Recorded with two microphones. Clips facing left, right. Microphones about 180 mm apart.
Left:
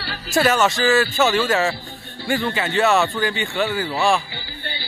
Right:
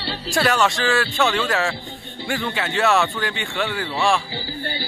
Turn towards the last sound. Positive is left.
turn(degrees=-40)  # may be behind; listen again after turning